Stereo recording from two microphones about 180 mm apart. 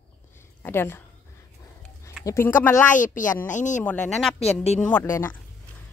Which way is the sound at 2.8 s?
45° left (ahead or behind).